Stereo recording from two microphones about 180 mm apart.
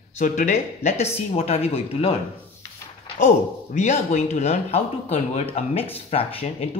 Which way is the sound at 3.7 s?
40° left (ahead or behind).